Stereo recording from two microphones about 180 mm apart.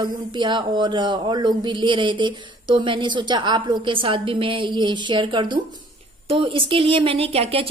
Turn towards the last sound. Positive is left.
turn(degrees=-35)  # may be behind; listen again after turning